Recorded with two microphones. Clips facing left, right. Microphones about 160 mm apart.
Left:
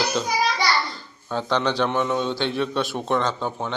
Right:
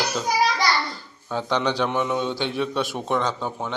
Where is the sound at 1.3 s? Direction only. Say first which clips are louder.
Left 1 dB; 15° right (ahead or behind).